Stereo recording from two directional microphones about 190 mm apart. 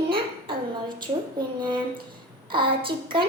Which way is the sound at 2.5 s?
25° right (ahead or behind).